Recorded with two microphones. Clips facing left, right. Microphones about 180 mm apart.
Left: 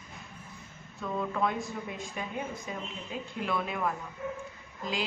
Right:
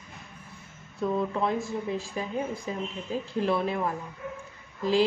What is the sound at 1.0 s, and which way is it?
A woman's voice, 30° right (ahead or behind).